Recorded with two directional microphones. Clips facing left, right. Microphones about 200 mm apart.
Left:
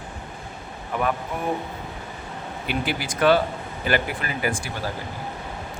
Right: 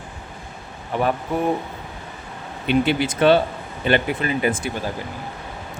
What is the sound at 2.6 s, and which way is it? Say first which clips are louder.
Speech: right 9 dB; 25° right (ahead or behind).